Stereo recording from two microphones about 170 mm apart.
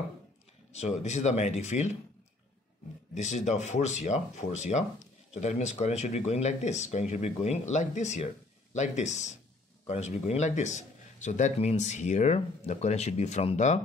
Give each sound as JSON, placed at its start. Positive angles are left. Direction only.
{"t": 0.7, "sound": "speech", "side_deg": 40}
{"t": 3.2, "sound": "a man's voice", "side_deg": 45}